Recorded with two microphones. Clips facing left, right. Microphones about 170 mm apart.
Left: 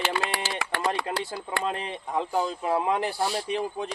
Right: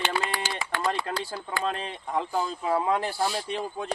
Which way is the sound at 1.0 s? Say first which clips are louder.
Left 1 dB; 15° left (ahead or behind).